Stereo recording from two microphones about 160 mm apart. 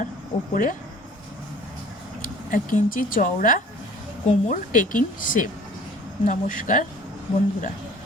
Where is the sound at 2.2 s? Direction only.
60° left (ahead or behind).